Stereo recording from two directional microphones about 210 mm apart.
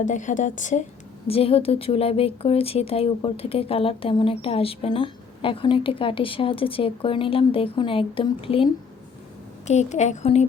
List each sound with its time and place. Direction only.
0.0 s a woman's voice: 35° left (ahead or behind)